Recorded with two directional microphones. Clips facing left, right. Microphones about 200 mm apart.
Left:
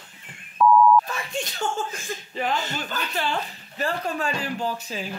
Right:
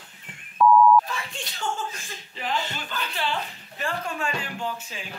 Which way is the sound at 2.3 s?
45° left (ahead or behind).